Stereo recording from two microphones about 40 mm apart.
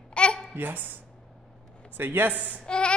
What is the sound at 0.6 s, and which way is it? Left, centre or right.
Speech, right.